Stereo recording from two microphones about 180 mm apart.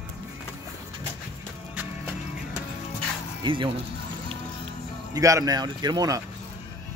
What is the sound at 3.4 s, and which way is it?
Speech, 25° right (ahead or behind).